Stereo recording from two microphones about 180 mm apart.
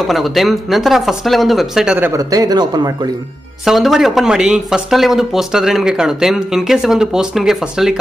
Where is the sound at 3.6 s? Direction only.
Centre (ahead or behind).